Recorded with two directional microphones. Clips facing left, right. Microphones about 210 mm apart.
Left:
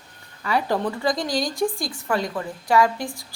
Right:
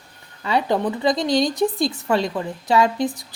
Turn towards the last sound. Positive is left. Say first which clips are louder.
# right 2 dB
turn(degrees=-20)  # may be behind; listen again after turning